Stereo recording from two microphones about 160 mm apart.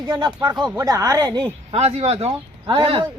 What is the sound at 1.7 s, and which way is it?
Speech, 40° right (ahead or behind).